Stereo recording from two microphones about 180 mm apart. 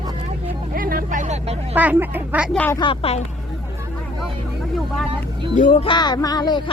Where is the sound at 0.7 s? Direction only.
55° right (ahead or behind).